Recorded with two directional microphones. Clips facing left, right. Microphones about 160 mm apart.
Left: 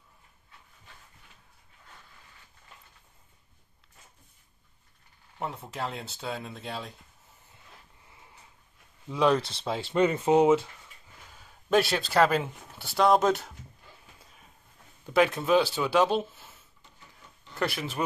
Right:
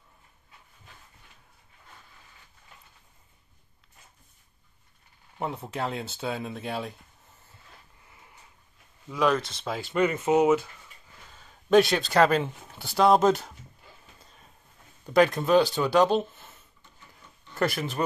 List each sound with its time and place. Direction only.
5.4 s speech: centre (ahead or behind)
9.1 s speech: 30° left (ahead or behind)
11.3 s speech: 5° left (ahead or behind)
14.2 s a sound: 5° left (ahead or behind)
15.0 s speech: 5° left (ahead or behind)
17.6 s speech: centre (ahead or behind)